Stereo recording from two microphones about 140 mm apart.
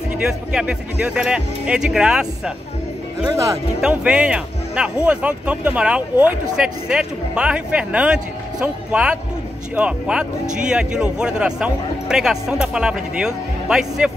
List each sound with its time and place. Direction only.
0.2 s speech: 5° right (ahead or behind)
3.3 s speech: 20° right (ahead or behind)
3.8 s speech: 10° right (ahead or behind)